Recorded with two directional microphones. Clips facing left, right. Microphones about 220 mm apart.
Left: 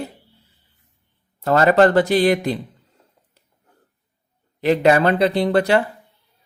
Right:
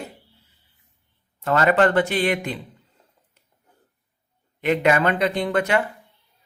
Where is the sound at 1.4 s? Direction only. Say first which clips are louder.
Left 4 dB; 40° left (ahead or behind).